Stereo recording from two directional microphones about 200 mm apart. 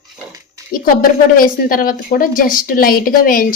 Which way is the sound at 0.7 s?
45° left (ahead or behind).